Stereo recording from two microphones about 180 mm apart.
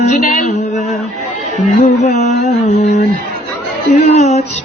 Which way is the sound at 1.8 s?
40° left (ahead or behind).